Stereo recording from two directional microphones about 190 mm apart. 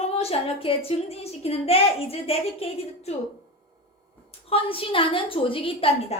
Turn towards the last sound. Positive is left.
turn(degrees=30)  # may be behind; listen again after turning